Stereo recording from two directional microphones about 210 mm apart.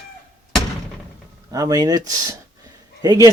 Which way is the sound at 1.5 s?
15° right (ahead or behind).